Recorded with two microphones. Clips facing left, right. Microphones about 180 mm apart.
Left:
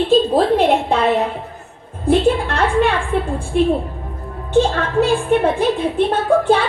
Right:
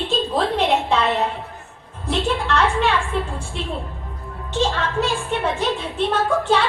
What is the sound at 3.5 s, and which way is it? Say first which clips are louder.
A woman's voice: left 15 dB; 50° left (ahead or behind).